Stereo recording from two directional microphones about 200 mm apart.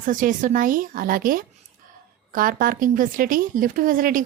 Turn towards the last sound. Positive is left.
turn(degrees=-45)  # may be behind; listen again after turning